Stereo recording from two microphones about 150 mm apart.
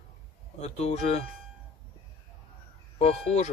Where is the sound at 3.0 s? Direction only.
45° left (ahead or behind).